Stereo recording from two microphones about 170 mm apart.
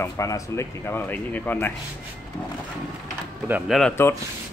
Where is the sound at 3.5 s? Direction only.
10° right (ahead or behind).